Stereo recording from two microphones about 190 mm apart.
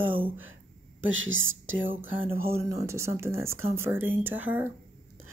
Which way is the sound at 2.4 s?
15° right (ahead or behind).